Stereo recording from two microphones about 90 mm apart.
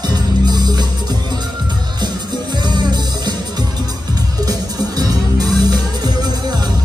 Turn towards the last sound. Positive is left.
turn(degrees=-50)  # may be behind; listen again after turning